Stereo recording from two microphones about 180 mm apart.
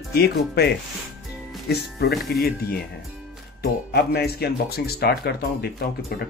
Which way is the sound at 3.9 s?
60° left (ahead or behind).